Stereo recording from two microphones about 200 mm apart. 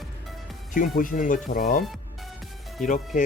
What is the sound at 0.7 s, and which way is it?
Speech, 40° left (ahead or behind).